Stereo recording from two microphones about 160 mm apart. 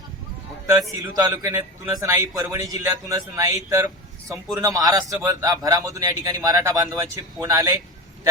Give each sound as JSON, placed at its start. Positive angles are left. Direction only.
{"t": 0.7, "sound": "a man's voice", "side_deg": -20}